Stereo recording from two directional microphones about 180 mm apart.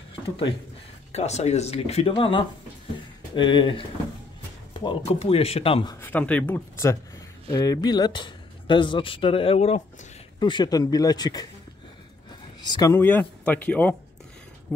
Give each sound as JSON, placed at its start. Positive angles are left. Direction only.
{"t": 1.1, "sound": "speech", "side_deg": 35}
{"t": 5.9, "sound": "speech", "side_deg": 10}
{"t": 10.4, "sound": "speech", "side_deg": 25}
{"t": 12.6, "sound": "speech", "side_deg": 20}